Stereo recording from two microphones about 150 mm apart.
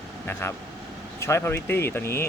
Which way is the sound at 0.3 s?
15° left (ahead or behind).